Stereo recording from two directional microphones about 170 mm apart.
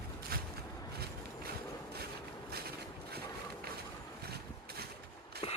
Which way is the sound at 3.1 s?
65° right (ahead or behind).